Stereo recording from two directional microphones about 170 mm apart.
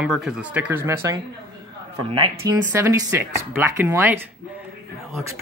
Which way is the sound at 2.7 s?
15° right (ahead or behind).